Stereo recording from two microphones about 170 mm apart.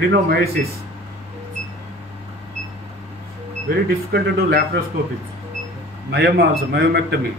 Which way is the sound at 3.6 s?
65° right (ahead or behind).